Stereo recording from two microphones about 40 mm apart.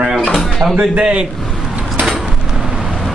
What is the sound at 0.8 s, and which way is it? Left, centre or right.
Speech, right.